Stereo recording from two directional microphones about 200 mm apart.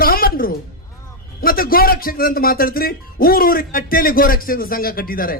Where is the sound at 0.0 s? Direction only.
45° left (ahead or behind).